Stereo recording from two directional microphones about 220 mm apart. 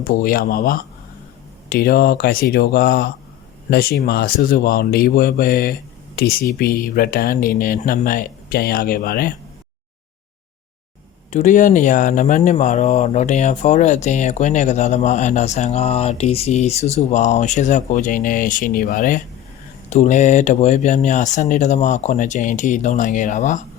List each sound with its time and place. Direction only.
0.0 s speech: 40° left (ahead or behind)
11.3 s speech: 35° left (ahead or behind)